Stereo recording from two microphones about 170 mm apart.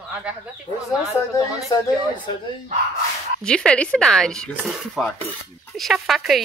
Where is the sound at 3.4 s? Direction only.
5° left (ahead or behind).